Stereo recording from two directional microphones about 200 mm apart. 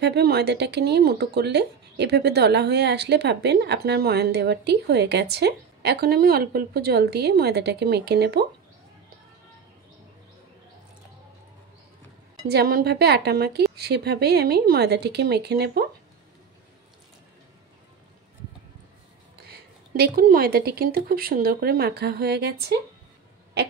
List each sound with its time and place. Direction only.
0.0 s speech: 55° right (ahead or behind)
12.4 s speech: 50° right (ahead or behind)
19.4 s speech: 50° right (ahead or behind)
23.6 s a sound: 60° right (ahead or behind)